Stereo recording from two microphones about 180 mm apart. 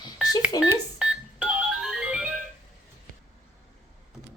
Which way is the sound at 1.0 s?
5° right (ahead or behind).